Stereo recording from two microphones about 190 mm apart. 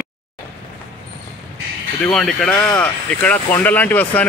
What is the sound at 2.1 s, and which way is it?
Speech, centre (ahead or behind).